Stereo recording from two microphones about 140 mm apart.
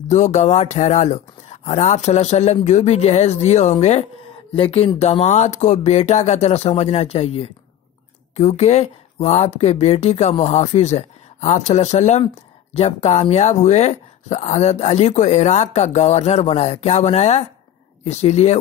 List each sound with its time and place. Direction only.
0.1 s speech: 55° left (ahead or behind)